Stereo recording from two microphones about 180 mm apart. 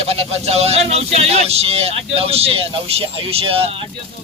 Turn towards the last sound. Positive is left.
turn(degrees=-30)  # may be behind; listen again after turning